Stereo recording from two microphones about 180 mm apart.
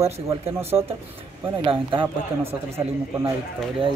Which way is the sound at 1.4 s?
25° right (ahead or behind).